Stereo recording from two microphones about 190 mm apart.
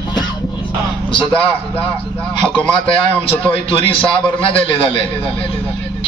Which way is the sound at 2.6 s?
5° left (ahead or behind).